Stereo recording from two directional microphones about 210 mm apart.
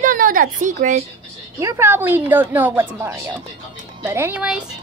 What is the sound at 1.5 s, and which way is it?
Speech, 15° right (ahead or behind).